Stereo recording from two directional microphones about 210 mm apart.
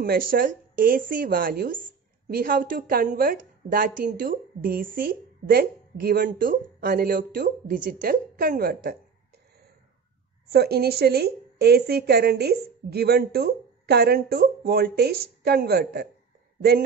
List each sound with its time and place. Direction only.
0.0 s a woman's voice: 45° right (ahead or behind)
10.5 s a woman's voice: 50° right (ahead or behind)